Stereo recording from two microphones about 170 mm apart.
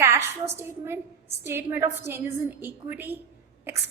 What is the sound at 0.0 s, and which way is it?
A woman's voice, 15° right (ahead or behind).